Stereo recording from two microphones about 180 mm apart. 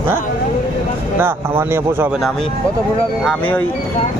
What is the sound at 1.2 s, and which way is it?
Speech, 10° right (ahead or behind).